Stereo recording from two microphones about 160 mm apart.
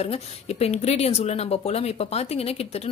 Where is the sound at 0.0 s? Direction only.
40° left (ahead or behind).